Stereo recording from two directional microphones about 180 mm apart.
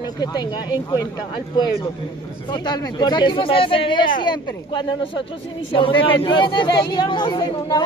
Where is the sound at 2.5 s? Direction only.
25° left (ahead or behind).